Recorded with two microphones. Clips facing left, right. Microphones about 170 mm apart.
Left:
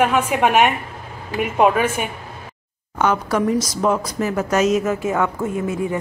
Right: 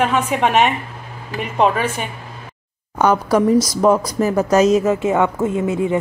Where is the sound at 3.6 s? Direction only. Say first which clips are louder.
Right 5 dB; 35° right (ahead or behind).